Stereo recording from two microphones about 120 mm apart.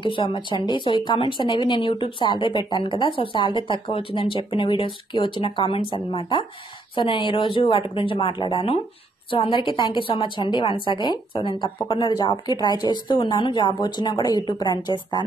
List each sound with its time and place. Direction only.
0.0 s a woman's voice: 45° left (ahead or behind)